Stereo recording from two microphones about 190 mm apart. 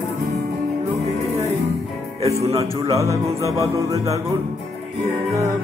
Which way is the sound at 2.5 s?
15° right (ahead or behind).